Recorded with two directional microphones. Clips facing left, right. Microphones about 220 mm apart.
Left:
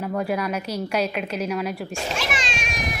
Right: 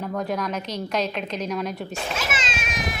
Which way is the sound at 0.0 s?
5° left (ahead or behind).